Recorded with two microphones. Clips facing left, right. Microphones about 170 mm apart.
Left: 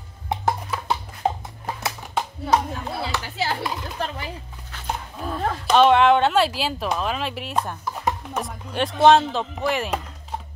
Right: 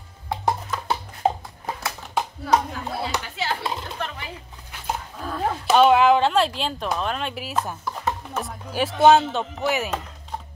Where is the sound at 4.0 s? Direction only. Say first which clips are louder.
Left 5 dB; 35° left (ahead or behind).